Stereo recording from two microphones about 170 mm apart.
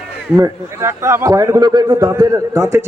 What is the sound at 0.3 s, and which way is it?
A man's voice, 20° right (ahead or behind).